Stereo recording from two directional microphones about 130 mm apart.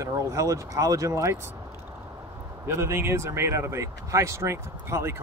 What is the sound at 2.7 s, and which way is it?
Speech, 20° right (ahead or behind).